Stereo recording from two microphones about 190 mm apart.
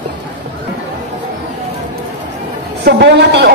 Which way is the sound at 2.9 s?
60° right (ahead or behind).